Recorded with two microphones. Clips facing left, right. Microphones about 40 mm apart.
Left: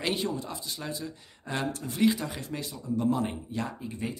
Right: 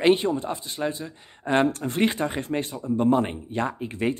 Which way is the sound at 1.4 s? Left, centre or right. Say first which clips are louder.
Right 10 dB; right.